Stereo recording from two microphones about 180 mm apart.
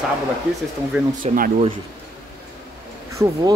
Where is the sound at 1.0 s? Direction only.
10° right (ahead or behind).